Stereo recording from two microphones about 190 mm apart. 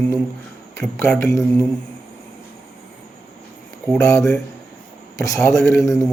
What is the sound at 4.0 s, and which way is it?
Speech, 15° left (ahead or behind).